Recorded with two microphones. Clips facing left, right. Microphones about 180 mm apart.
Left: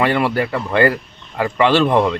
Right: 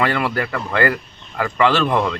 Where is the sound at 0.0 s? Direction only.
25° left (ahead or behind).